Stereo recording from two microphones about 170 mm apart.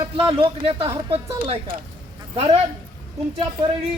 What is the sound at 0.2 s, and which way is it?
Speech, 30° right (ahead or behind).